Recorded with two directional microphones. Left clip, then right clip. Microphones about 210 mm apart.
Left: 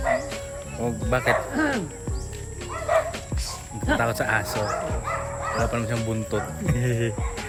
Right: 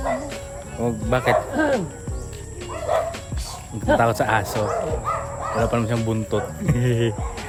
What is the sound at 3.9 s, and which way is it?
Speech, 15° right (ahead or behind).